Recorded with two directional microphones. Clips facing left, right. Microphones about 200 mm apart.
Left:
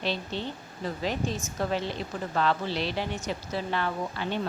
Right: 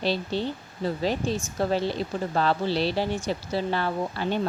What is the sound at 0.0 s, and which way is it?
Speech, 35° right (ahead or behind).